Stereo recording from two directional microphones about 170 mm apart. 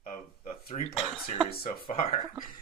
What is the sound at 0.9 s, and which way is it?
Speech, 5° right (ahead or behind).